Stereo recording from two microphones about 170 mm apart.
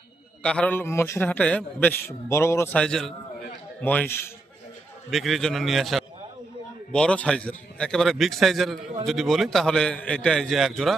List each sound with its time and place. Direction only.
0.4 s a man's voice: 5° left (ahead or behind)
2.8 s a man's voice: 5° left (ahead or behind)
5.1 s a man's voice: centre (ahead or behind)